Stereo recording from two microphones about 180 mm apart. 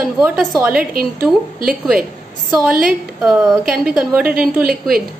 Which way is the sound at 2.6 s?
5° right (ahead or behind).